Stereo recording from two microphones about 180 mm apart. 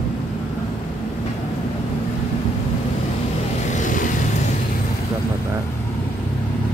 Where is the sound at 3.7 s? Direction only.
45° left (ahead or behind).